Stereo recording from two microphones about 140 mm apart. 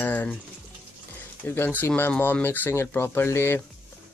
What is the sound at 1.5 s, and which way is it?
Speech, 15° left (ahead or behind).